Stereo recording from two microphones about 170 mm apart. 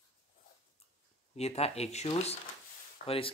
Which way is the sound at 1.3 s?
40° left (ahead or behind).